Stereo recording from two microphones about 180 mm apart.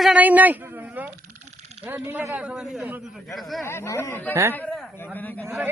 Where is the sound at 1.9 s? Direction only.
10° right (ahead or behind).